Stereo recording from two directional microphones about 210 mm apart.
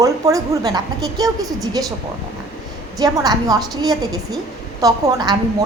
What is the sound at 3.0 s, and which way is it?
A woman's voice, 20° right (ahead or behind).